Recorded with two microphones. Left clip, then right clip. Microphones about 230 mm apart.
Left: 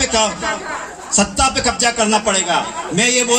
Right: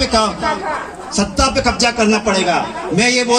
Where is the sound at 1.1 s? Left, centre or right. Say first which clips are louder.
Even; left.